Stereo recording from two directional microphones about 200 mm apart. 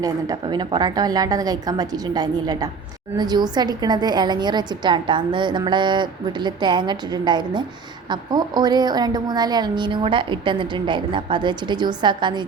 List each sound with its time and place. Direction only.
0.0 s a woman's voice: 20° right (ahead or behind)